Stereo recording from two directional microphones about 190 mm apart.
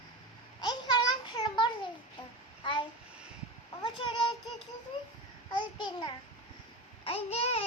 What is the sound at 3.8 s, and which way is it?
Child singing, 25° left (ahead or behind).